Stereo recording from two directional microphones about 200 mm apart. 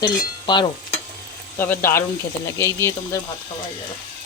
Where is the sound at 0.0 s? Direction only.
25° left (ahead or behind).